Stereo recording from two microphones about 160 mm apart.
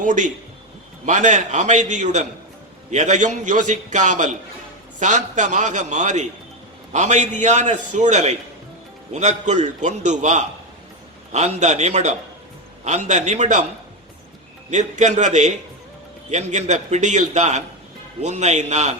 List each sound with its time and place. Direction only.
0.0 s a man's voice: 50° right (ahead or behind)
14.7 s a man's voice: 50° right (ahead or behind)